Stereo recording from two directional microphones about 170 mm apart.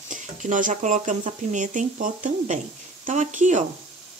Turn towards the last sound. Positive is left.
turn(degrees=-45)  # may be behind; listen again after turning